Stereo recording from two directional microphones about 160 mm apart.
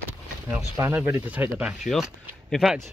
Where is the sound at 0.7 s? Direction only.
15° right (ahead or behind).